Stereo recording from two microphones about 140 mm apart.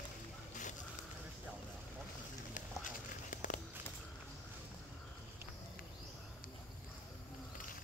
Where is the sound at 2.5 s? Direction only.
70° left (ahead or behind).